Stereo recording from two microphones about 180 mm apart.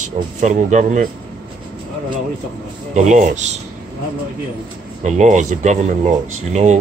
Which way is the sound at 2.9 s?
40° right (ahead or behind).